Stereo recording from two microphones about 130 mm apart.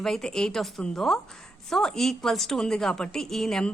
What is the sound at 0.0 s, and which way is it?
A woman's voice, 5° left (ahead or behind).